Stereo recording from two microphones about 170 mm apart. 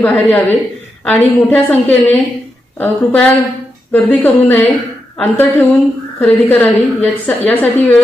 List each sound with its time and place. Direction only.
0.0 s a woman's voice: 10° left (ahead or behind)